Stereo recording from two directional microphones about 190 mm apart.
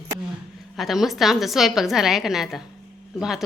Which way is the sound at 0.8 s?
Centre (ahead or behind).